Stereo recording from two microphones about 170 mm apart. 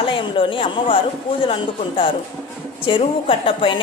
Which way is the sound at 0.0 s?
30° left (ahead or behind).